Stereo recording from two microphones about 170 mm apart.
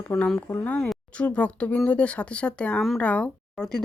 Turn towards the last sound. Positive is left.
turn(degrees=5)  # may be behind; listen again after turning